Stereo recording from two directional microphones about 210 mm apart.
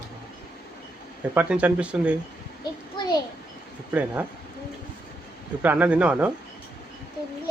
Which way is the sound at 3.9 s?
10° right (ahead or behind).